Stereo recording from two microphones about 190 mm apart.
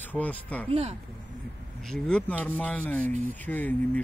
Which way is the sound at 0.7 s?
35° right (ahead or behind).